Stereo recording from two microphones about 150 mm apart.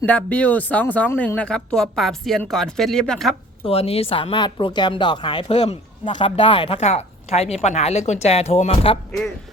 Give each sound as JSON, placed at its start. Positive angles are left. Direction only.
{"t": 0.0, "sound": "speech", "side_deg": 10}
{"t": 3.7, "sound": "speech", "side_deg": 40}
{"t": 5.5, "sound": "speech", "side_deg": 45}
{"t": 6.1, "sound": "speech", "side_deg": 30}